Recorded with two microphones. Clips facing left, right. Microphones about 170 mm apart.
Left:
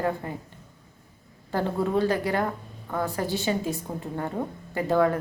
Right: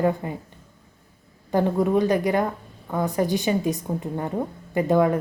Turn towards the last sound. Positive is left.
turn(degrees=-20)  # may be behind; listen again after turning